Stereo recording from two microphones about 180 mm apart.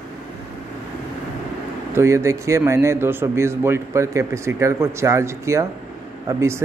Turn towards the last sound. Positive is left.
turn(degrees=-15)  # may be behind; listen again after turning